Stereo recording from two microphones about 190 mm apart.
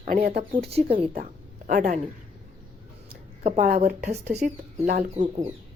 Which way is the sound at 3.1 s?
40° right (ahead or behind).